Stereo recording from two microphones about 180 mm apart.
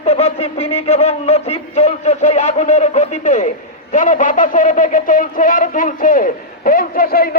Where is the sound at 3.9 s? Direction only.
45° left (ahead or behind).